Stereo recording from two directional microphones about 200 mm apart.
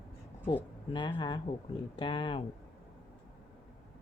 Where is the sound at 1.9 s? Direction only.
25° left (ahead or behind).